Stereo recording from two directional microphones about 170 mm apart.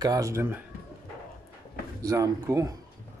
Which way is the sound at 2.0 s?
20° right (ahead or behind).